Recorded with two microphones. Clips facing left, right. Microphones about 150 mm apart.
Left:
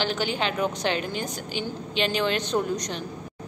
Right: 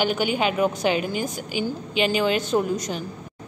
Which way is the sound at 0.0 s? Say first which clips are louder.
Right 4 dB; 10° right (ahead or behind).